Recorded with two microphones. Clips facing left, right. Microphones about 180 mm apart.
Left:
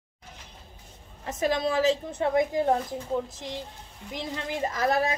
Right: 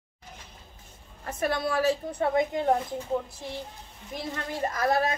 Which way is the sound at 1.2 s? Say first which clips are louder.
Left 2 dB; 20° left (ahead or behind).